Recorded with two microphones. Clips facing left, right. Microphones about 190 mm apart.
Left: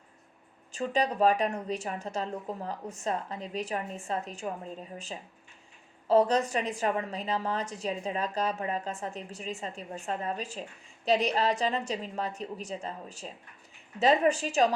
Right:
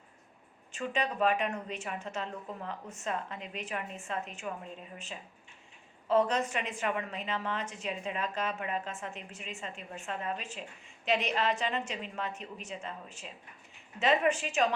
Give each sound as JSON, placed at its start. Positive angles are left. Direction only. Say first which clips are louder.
{"t": 0.7, "sound": "a woman's voice", "louder": "left 5 dB", "side_deg": 35}